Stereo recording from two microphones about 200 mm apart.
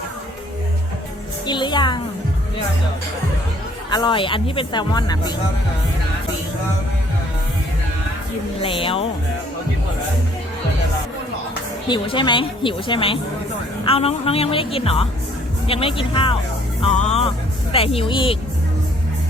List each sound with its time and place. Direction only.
1.5 s music: 20° left (ahead or behind)
3.8 s speech: 20° left (ahead or behind)
8.6 s speech: 25° left (ahead or behind)
11.9 s speech: 25° left (ahead or behind)